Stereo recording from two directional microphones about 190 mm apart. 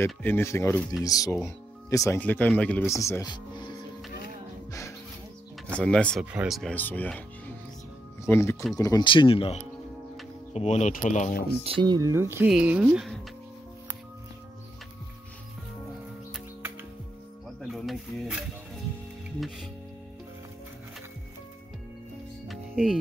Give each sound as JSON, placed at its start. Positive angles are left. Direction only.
{"t": 0.0, "sound": "speech", "side_deg": 10}
{"t": 5.7, "sound": "speech", "side_deg": 5}
{"t": 11.6, "sound": "speech", "side_deg": -25}
{"t": 17.6, "sound": "a sound", "side_deg": 0}
{"t": 22.5, "sound": "music", "side_deg": 0}